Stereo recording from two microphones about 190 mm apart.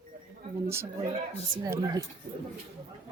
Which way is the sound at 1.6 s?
20° right (ahead or behind).